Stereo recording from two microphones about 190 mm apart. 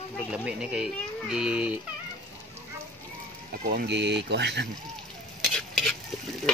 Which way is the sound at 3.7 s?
60° right (ahead or behind).